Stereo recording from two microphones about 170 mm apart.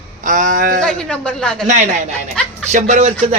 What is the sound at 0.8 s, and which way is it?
Speech, 5° left (ahead or behind).